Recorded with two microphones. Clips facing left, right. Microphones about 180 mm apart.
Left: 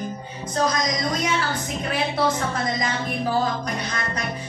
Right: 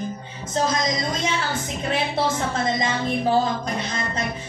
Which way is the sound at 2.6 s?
25° right (ahead or behind).